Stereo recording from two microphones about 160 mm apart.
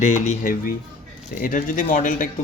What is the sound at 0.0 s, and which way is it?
Speech, 55° left (ahead or behind).